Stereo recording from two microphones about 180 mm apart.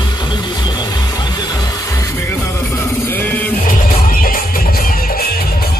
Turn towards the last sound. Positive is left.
turn(degrees=55)  # may be behind; listen again after turning